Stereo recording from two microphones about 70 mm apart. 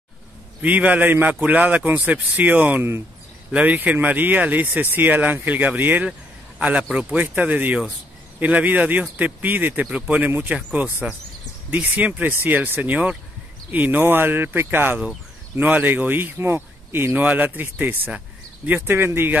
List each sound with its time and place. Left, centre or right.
0.6 s speech: right